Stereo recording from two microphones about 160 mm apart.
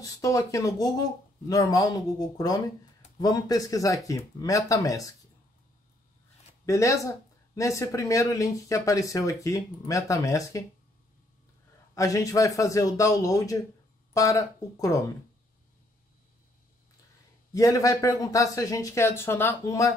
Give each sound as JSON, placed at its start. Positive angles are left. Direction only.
{"t": 0.0, "sound": "speech", "side_deg": 20}
{"t": 6.6, "sound": "speech", "side_deg": 20}
{"t": 11.9, "sound": "speech", "side_deg": 20}
{"t": 17.5, "sound": "speech", "side_deg": 20}